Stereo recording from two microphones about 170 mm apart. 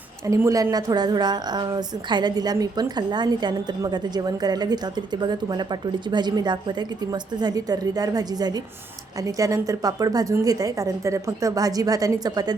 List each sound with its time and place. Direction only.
0.3 s a woman's voice: 20° right (ahead or behind)